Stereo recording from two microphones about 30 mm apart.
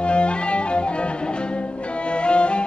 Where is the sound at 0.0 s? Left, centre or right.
Left.